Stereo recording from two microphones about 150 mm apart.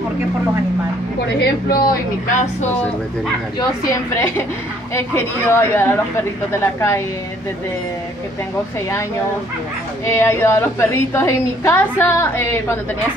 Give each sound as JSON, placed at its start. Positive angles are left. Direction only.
{"t": 1.4, "sound": "a woman's voice", "side_deg": 75}
{"t": 3.5, "sound": "a woman's voice", "side_deg": 20}
{"t": 10.0, "sound": "a woman's voice", "side_deg": 15}